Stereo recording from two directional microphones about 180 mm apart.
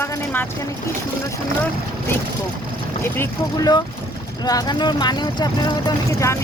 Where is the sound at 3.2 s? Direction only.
20° left (ahead or behind).